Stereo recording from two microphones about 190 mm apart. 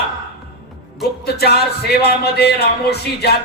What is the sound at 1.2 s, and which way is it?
Speech, 55° left (ahead or behind).